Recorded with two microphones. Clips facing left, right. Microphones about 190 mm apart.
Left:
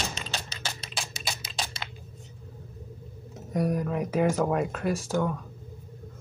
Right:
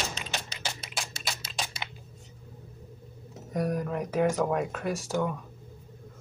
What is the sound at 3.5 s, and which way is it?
Speech, 5° left (ahead or behind).